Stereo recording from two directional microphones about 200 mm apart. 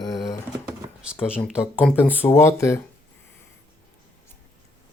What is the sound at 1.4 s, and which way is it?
Speech, centre (ahead or behind).